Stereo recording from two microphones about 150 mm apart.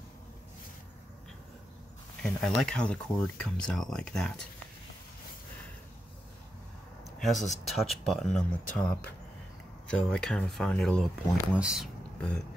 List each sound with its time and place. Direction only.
2.2 s speech: 5° left (ahead or behind)
7.1 s speech: centre (ahead or behind)
11.3 s speech: 5° right (ahead or behind)